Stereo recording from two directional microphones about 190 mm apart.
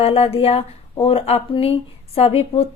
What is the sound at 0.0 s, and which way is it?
Speech, 30° left (ahead or behind).